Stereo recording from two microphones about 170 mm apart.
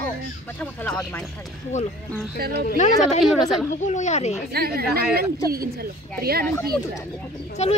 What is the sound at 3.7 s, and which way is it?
Speech, 45° left (ahead or behind).